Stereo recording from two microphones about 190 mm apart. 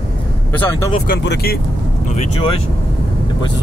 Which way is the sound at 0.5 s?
10° left (ahead or behind).